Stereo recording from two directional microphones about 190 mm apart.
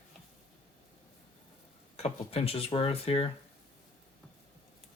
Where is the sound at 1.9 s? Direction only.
35° left (ahead or behind).